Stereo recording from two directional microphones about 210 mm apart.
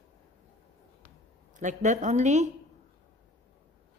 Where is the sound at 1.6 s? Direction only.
35° right (ahead or behind).